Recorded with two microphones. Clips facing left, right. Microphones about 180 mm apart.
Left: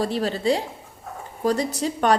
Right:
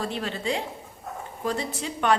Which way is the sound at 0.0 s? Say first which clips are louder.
Left 7 dB; 35° left (ahead or behind).